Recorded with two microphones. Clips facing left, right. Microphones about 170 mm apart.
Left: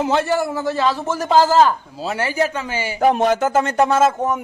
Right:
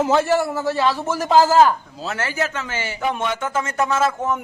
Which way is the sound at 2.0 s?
15° left (ahead or behind).